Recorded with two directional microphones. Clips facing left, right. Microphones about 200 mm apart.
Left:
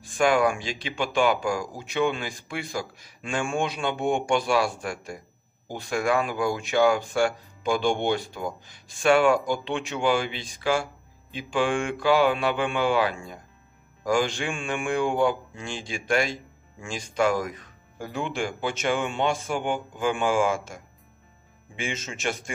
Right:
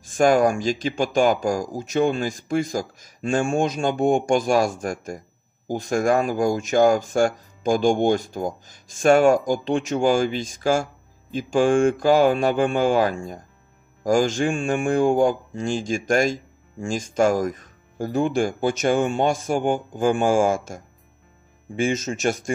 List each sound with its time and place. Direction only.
0.0 s speech: 45° right (ahead or behind)